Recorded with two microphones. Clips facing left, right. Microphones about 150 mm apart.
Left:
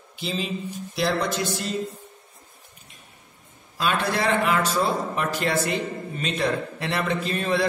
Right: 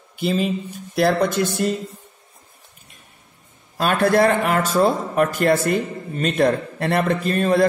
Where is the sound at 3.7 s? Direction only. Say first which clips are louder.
Right 8 dB; 50° right (ahead or behind).